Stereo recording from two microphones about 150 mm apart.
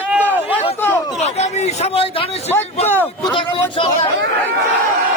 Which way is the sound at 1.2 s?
45° left (ahead or behind).